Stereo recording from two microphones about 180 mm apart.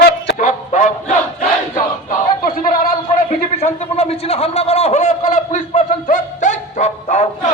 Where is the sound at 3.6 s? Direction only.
35° left (ahead or behind).